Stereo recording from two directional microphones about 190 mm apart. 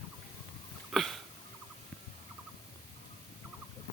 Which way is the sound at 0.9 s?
Centre (ahead or behind).